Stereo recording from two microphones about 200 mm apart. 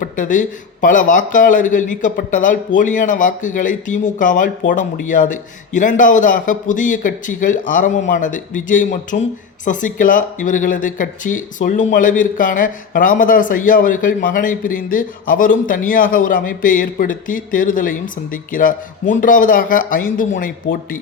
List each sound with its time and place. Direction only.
0.0 s speech: 40° left (ahead or behind)